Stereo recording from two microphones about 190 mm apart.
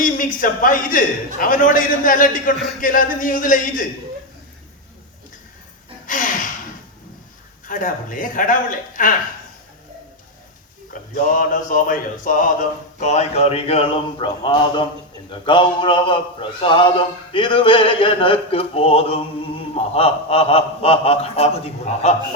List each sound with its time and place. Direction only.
0.0 s a man's voice: 45° left (ahead or behind)
6.1 s gasp: 45° left (ahead or behind)
7.7 s a man's voice: 45° left (ahead or behind)
11.1 s a man's voice: 45° left (ahead or behind)